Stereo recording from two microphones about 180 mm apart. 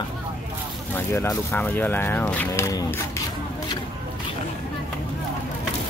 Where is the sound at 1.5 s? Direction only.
10° left (ahead or behind).